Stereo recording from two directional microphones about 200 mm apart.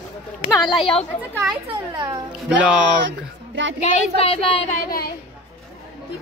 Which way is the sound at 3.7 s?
35° left (ahead or behind).